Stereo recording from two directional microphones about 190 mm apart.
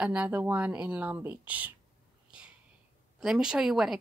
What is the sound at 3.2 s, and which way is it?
Speech, 5° right (ahead or behind).